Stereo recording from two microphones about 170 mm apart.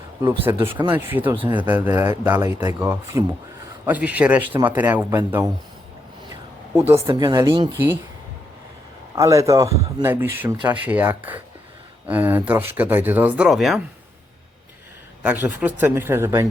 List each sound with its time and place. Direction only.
0.5 s speech: 15° right (ahead or behind)
6.7 s speech: 15° right (ahead or behind)
9.1 s speech: 20° right (ahead or behind); by 13.8 s centre (ahead or behind)
15.2 s speech: 10° right (ahead or behind)